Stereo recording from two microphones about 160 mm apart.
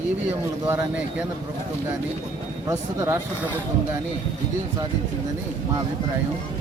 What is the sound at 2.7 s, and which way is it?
Speech, 20° right (ahead or behind).